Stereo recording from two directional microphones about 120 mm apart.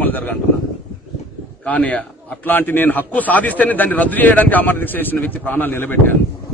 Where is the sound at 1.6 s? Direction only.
10° left (ahead or behind).